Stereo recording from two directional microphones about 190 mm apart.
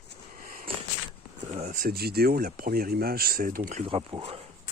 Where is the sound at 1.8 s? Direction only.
50° right (ahead or behind).